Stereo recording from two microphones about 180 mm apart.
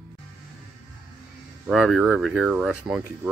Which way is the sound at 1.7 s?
Centre (ahead or behind).